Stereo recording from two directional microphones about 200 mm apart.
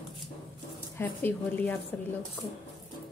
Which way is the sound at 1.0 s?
10° left (ahead or behind).